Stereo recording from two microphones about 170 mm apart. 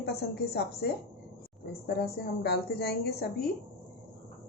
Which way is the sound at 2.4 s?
75° left (ahead or behind).